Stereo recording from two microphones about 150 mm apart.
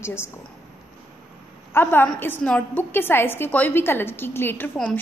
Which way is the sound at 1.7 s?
15° left (ahead or behind).